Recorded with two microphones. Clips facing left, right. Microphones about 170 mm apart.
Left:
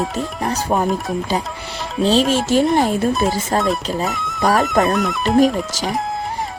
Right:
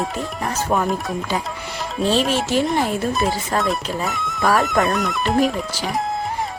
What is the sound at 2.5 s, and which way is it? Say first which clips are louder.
Speech: left 4 dB; 40° left (ahead or behind).